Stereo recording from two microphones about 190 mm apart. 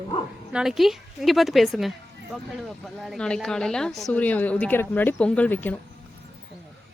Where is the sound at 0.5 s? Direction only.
Centre (ahead or behind).